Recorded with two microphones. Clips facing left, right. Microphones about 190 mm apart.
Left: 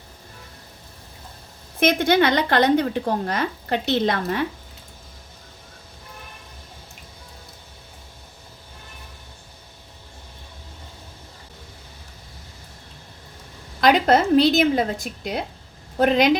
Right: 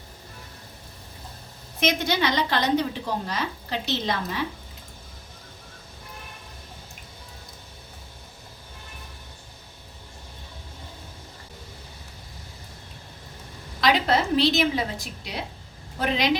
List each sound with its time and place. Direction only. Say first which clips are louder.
1.8 s a woman's voice: left 6 dB; 55° left (ahead or behind)
13.8 s a woman's voice: left 5 dB; 50° left (ahead or behind)